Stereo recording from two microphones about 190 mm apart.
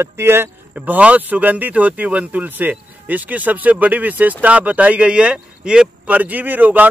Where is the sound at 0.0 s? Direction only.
15° right (ahead or behind).